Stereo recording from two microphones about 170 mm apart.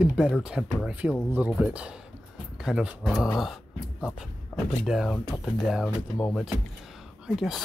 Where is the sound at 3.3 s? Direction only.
Centre (ahead or behind).